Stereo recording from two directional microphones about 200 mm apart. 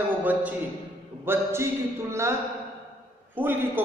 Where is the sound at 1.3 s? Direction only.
10° right (ahead or behind).